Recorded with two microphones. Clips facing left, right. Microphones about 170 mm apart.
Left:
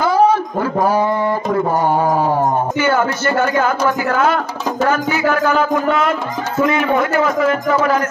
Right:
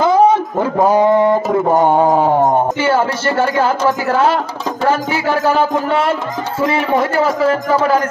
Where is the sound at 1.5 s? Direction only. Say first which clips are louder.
Right 3 dB; 20° right (ahead or behind).